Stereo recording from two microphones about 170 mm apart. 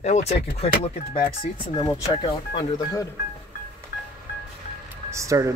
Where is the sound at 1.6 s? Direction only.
25° left (ahead or behind).